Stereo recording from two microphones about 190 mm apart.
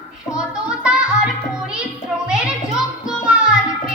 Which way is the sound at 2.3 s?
5° right (ahead or behind).